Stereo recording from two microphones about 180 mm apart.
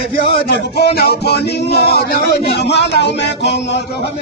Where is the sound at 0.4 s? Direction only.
60° left (ahead or behind).